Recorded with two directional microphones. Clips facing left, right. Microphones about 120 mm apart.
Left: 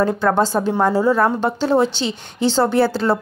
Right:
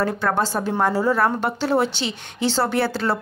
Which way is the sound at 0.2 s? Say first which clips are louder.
Left 5 dB; centre (ahead or behind).